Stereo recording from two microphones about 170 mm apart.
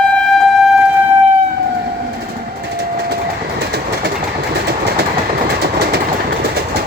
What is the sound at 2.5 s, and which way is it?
Train, 70° right (ahead or behind).